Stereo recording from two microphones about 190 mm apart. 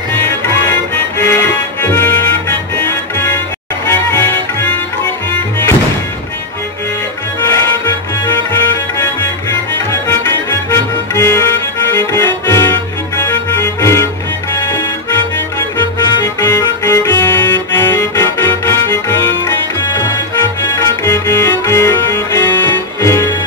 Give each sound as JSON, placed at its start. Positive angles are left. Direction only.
{"t": 0.5, "sound": "music", "side_deg": 15}
{"t": 7.5, "sound": "music", "side_deg": 10}
{"t": 9.8, "sound": "music", "side_deg": 15}
{"t": 16.3, "sound": "organ", "side_deg": 20}
{"t": 20.0, "sound": "accordion", "side_deg": 15}